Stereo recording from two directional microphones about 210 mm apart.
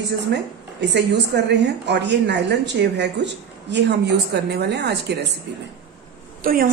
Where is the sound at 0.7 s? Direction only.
55° right (ahead or behind).